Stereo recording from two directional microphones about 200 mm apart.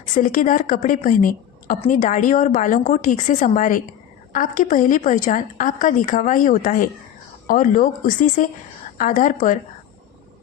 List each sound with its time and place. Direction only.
0.1 s a woman's voice: 40° left (ahead or behind)